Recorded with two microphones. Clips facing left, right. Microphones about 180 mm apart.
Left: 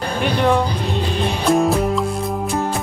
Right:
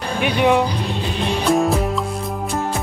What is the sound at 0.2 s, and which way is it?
Speech, 5° right (ahead or behind).